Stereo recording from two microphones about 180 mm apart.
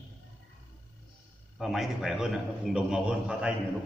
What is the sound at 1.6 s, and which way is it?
A man's voice, centre (ahead or behind).